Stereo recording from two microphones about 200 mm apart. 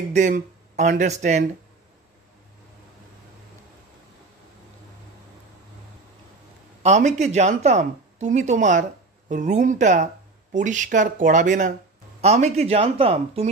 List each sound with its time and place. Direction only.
0.1 s speech: 35° right (ahead or behind)
6.8 s speech: 35° right (ahead or behind)